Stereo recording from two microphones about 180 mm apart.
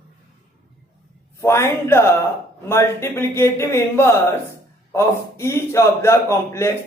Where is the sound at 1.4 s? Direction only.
15° left (ahead or behind).